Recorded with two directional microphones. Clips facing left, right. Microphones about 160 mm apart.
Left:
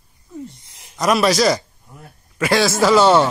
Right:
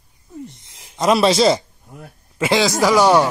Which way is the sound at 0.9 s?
25° right (ahead or behind).